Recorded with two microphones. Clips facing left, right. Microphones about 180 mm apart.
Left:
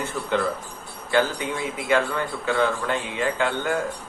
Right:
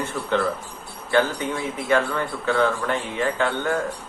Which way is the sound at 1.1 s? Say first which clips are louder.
Right 1 dB; 15° left (ahead or behind).